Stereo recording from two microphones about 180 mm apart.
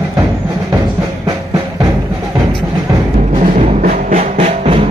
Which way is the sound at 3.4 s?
40° right (ahead or behind).